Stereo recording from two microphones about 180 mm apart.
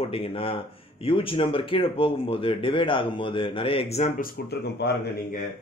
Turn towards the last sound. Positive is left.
turn(degrees=65)  # may be behind; listen again after turning